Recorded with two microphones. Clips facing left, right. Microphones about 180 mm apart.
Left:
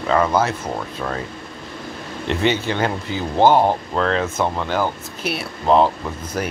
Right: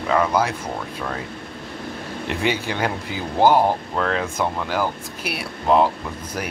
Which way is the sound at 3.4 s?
20° left (ahead or behind).